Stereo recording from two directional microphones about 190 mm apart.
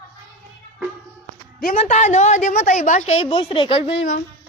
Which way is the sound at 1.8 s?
35° left (ahead or behind).